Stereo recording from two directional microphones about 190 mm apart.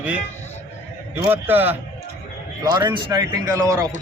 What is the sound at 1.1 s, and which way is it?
Speech, 10° right (ahead or behind).